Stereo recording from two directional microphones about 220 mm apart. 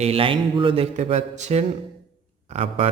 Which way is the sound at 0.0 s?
25° right (ahead or behind).